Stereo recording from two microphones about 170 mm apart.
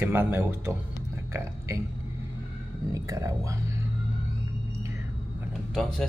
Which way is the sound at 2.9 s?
20° right (ahead or behind).